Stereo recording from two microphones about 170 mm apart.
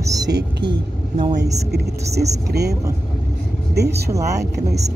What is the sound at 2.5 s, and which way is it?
Speech, 75° right (ahead or behind).